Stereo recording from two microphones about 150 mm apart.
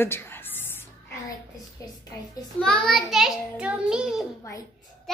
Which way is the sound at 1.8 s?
20° left (ahead or behind).